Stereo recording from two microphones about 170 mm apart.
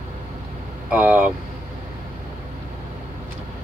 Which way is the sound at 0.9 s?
10° right (ahead or behind).